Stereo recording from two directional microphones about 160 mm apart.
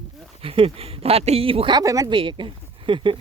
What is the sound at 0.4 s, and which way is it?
Speech, 35° right (ahead or behind).